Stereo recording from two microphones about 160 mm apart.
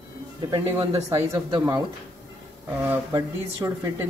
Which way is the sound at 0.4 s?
25° right (ahead or behind).